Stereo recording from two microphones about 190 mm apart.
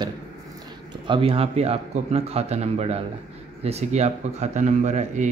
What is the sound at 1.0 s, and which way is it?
Speech, 25° right (ahead or behind).